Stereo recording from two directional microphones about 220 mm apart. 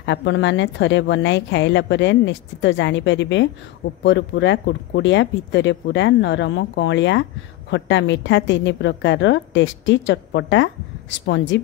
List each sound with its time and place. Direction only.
0.0 s a woman's voice: 55° left (ahead or behind)